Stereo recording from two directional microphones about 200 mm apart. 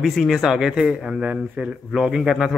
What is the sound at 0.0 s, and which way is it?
Speech, centre (ahead or behind).